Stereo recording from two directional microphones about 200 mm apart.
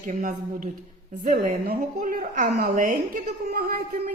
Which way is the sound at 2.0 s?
45° right (ahead or behind).